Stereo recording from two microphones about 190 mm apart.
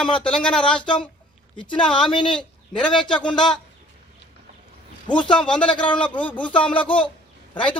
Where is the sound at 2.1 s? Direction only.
25° left (ahead or behind).